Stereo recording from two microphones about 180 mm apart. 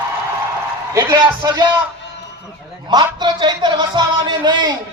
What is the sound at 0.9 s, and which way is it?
Speech, 15° right (ahead or behind).